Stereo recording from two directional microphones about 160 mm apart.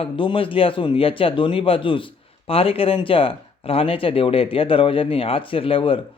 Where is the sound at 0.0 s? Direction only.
35° left (ahead or behind).